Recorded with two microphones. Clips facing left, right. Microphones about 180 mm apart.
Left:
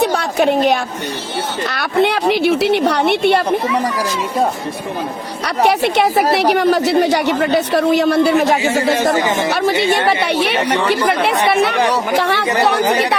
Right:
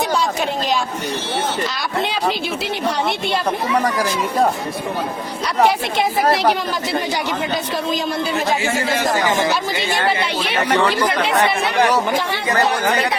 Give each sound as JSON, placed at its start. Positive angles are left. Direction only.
{"t": 0.0, "sound": "a woman's voice", "side_deg": 65}
{"t": 5.6, "sound": "speech", "side_deg": 70}
{"t": 9.1, "sound": "speech", "side_deg": 25}
{"t": 9.5, "sound": "speech", "side_deg": 65}
{"t": 12.1, "sound": "speech", "side_deg": 70}